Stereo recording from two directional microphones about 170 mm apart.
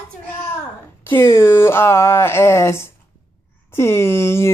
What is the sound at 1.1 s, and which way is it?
Speech, 15° left (ahead or behind).